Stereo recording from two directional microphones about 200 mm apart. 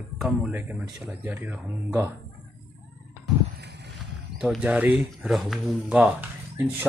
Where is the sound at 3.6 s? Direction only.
55° right (ahead or behind).